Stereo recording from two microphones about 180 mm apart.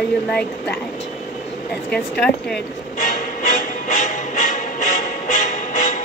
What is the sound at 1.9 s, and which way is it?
Speech, 5° left (ahead or behind).